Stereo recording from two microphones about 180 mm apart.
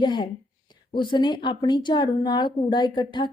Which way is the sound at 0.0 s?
25° left (ahead or behind).